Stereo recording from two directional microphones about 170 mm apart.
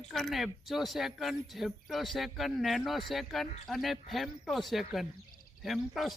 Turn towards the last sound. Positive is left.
turn(degrees=0)  # may be behind; listen again after turning